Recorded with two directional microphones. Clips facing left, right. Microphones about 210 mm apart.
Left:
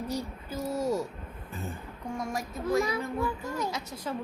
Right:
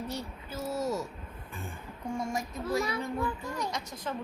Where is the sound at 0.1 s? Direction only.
10° left (ahead or behind).